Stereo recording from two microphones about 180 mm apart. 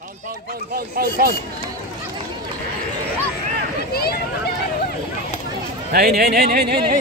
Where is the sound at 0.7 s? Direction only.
55° right (ahead or behind).